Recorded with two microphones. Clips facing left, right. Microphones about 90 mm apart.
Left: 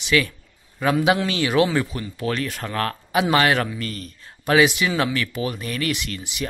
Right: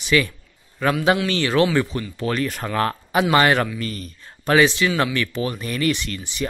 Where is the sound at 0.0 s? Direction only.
Centre (ahead or behind).